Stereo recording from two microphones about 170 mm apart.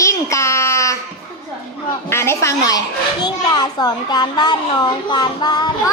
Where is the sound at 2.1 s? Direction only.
15° left (ahead or behind).